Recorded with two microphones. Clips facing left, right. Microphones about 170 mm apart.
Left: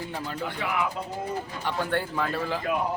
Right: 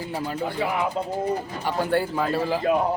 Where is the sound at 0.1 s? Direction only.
10° right (ahead or behind).